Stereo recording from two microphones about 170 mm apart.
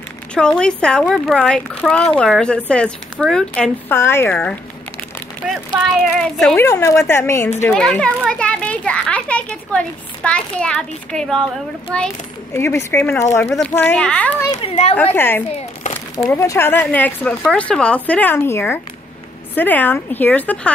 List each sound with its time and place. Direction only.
0.3 s speech: 5° left (ahead or behind)
6.6 s speech: 15° left (ahead or behind)
7.7 s a child's voice: 5° left (ahead or behind)
12.5 s speech: 15° left (ahead or behind)
14.5 s a woman's voice: 35° left (ahead or behind)
15.1 s speech: 10° left (ahead or behind)